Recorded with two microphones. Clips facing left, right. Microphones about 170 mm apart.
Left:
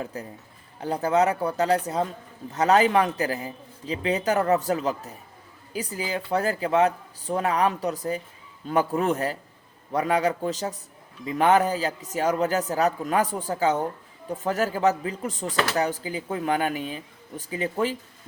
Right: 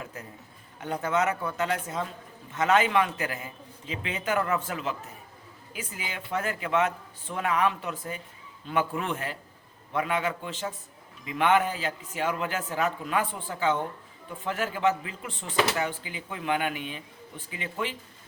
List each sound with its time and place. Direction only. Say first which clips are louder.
0.0 s a man's voice: left 7 dB; 35° left (ahead or behind)